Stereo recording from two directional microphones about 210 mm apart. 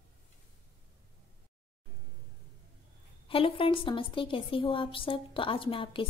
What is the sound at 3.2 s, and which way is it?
A woman's voice, 25° left (ahead or behind).